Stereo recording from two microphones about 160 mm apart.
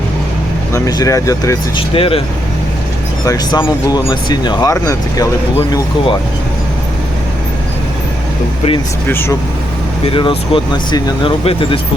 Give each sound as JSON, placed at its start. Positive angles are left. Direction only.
{"t": 0.7, "sound": "speech", "side_deg": 20}
{"t": 1.9, "sound": "speech", "side_deg": 35}
{"t": 3.2, "sound": "speech", "side_deg": 25}
{"t": 5.5, "sound": "speech", "side_deg": 30}
{"t": 9.0, "sound": "speech", "side_deg": 15}
{"t": 10.1, "sound": "speech", "side_deg": 30}